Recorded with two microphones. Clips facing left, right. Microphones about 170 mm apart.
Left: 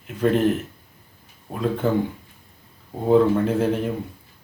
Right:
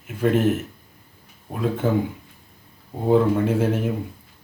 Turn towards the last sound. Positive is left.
turn(degrees=-5)  # may be behind; listen again after turning